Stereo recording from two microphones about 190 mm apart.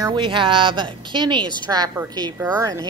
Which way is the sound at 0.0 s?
25° right (ahead or behind).